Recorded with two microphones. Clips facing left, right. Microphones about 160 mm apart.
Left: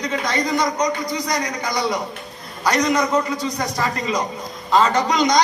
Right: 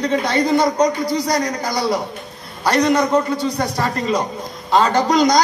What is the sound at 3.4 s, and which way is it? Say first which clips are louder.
Speech: right 4 dB; 30° right (ahead or behind).